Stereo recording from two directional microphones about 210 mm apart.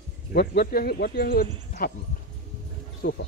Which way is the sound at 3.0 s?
45° left (ahead or behind).